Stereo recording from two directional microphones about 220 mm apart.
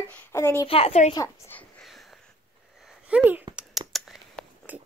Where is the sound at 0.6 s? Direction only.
25° left (ahead or behind).